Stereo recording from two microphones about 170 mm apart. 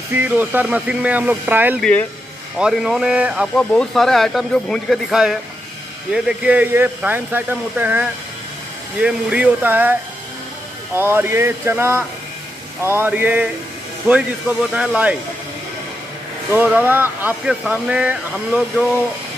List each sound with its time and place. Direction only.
0.1 s speech: 10° right (ahead or behind)
1.8 s speech: 5° left (ahead or behind)
3.5 s speech: 5° left (ahead or behind); by 9.9 s 10° right (ahead or behind)
11.0 s speech: 15° right (ahead or behind)
16.4 s speech: 10° right (ahead or behind)